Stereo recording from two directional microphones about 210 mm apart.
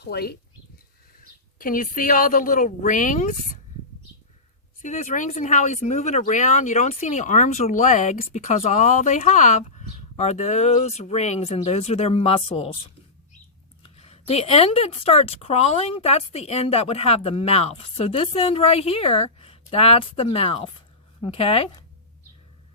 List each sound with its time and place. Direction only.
0.0 s speech: 50° left (ahead or behind)
1.5 s speech: 40° left (ahead or behind)
4.8 s speech: 35° left (ahead or behind)
13.9 s speech: 30° left (ahead or behind)